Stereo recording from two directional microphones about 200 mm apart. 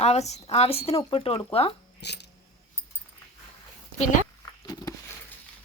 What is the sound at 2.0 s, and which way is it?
Dog, 55° left (ahead or behind).